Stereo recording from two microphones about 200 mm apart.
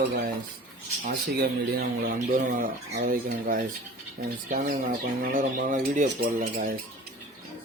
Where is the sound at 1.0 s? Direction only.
50° right (ahead or behind).